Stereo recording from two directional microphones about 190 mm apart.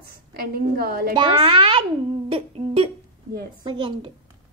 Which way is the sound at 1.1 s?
25° right (ahead or behind).